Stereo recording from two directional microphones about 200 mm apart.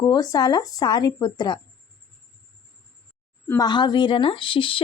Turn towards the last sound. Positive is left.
turn(degrees=25)  # may be behind; listen again after turning